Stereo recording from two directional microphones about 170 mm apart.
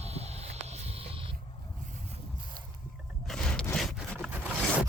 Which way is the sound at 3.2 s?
5° left (ahead or behind).